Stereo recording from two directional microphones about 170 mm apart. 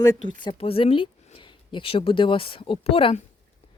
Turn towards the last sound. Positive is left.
turn(degrees=35)  # may be behind; listen again after turning